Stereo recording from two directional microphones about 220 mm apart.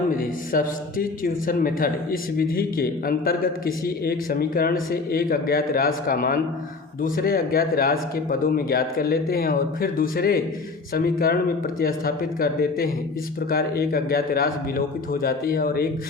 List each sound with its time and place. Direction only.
0.1 s a man's voice: 40° left (ahead or behind)